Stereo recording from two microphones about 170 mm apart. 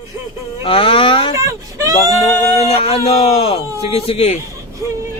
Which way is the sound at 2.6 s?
35° left (ahead or behind).